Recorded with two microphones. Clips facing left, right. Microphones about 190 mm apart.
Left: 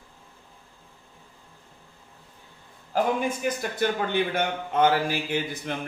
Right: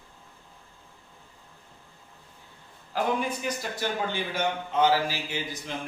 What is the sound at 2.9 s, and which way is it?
A man's voice, 50° left (ahead or behind).